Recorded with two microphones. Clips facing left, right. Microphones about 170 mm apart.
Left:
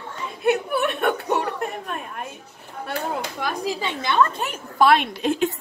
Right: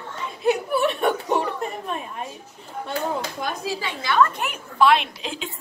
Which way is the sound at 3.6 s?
20° left (ahead or behind).